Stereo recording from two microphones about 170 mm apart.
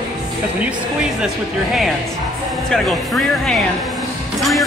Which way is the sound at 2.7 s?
Centre (ahead or behind).